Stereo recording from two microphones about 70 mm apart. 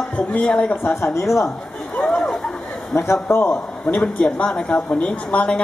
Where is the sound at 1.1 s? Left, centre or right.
Left.